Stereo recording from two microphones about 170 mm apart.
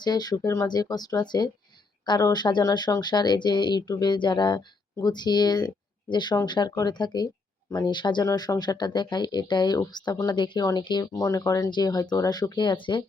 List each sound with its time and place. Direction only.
0.0 s speech: 25° left (ahead or behind)